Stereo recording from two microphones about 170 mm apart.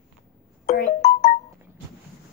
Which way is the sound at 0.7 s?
40° left (ahead or behind).